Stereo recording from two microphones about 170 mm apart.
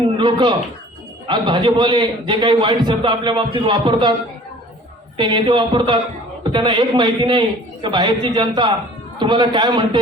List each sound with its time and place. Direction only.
0.2 s a man's voice: 30° right (ahead or behind)
5.1 s a man's voice: 30° right (ahead or behind)